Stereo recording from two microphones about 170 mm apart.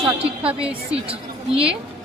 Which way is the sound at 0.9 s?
35° right (ahead or behind).